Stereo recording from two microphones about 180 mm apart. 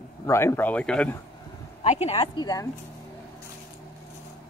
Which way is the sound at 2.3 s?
20° left (ahead or behind).